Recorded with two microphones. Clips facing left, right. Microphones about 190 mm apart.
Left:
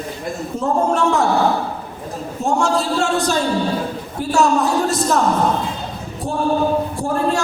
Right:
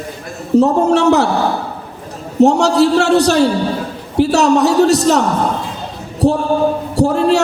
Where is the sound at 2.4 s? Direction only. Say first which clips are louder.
Right 9 dB; 75° right (ahead or behind).